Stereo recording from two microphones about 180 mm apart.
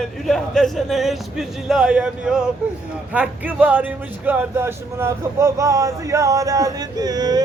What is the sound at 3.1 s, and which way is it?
Speech, 5° right (ahead or behind).